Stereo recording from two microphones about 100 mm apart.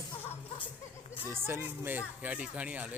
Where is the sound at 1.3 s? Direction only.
25° right (ahead or behind).